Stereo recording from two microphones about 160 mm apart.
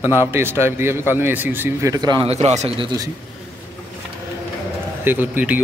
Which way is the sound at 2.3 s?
45° right (ahead or behind).